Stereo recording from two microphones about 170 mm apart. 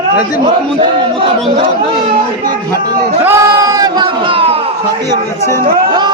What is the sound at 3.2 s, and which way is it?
Speech, 15° right (ahead or behind).